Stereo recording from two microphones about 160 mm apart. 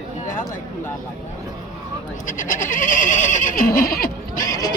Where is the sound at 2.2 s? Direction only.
55° left (ahead or behind).